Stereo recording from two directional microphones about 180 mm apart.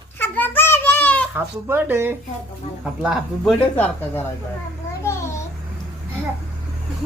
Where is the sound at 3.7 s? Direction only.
10° left (ahead or behind).